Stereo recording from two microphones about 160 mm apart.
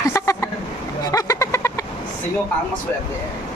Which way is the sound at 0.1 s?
20° left (ahead or behind).